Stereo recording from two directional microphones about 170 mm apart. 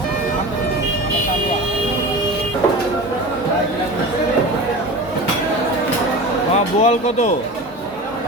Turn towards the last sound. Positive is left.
turn(degrees=40)  # may be behind; listen again after turning